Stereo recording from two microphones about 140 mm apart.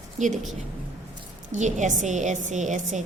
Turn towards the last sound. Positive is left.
turn(degrees=-60)  # may be behind; listen again after turning